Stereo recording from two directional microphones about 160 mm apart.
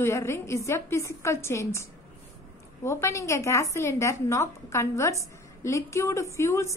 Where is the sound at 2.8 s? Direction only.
20° left (ahead or behind).